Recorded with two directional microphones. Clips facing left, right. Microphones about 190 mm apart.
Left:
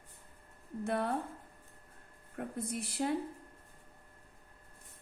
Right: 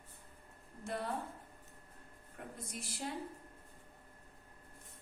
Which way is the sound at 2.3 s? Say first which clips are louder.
Left 9 dB; 60° left (ahead or behind).